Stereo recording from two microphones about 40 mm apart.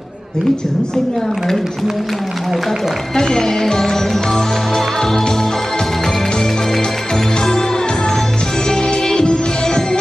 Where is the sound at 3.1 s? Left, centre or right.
Centre.